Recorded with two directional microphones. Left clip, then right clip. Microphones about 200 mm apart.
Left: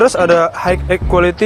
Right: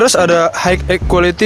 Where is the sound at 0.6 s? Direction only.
55° right (ahead or behind).